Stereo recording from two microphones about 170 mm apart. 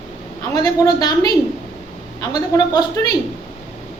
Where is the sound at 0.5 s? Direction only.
20° left (ahead or behind).